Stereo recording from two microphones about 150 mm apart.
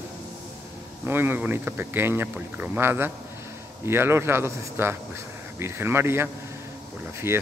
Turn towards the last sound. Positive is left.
turn(degrees=-15)  # may be behind; listen again after turning